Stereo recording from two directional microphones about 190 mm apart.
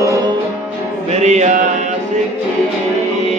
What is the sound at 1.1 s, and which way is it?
Mantra, 35° right (ahead or behind).